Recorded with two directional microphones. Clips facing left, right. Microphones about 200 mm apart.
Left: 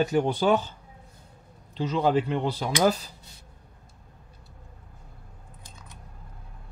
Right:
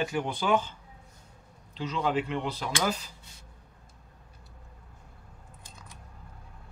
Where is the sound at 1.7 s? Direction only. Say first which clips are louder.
Left 5 dB; 40° left (ahead or behind).